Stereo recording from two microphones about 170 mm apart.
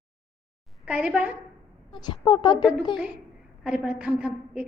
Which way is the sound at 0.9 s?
10° right (ahead or behind).